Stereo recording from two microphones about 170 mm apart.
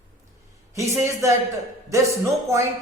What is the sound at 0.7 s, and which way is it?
A man's voice, 15° right (ahead or behind).